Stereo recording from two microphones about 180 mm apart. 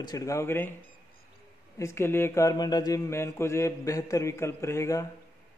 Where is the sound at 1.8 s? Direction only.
15° left (ahead or behind).